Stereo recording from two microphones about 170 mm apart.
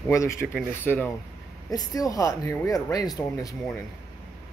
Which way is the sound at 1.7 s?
20° left (ahead or behind).